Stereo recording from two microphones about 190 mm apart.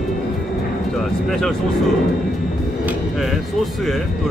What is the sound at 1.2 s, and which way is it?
Speech, centre (ahead or behind).